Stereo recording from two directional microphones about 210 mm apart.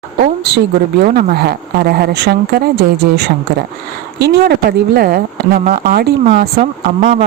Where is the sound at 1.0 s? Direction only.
45° right (ahead or behind).